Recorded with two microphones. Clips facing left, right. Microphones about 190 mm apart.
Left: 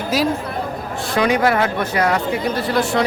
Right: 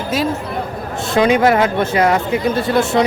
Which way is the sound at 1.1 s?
25° right (ahead or behind).